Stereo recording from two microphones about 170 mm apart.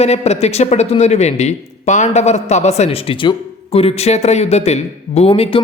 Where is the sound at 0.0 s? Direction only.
40° left (ahead or behind).